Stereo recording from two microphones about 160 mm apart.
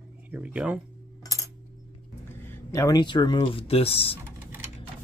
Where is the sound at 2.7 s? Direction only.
20° left (ahead or behind).